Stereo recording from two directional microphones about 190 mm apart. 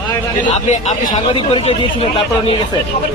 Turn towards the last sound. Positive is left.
turn(degrees=30)  # may be behind; listen again after turning